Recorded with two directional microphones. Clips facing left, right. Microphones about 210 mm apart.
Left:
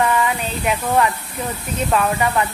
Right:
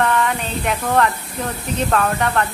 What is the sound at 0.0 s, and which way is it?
A woman's voice, 5° left (ahead or behind).